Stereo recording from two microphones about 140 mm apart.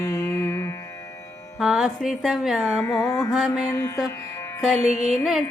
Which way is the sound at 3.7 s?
20° left (ahead or behind).